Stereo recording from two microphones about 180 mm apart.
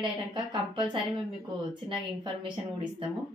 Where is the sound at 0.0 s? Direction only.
25° right (ahead or behind).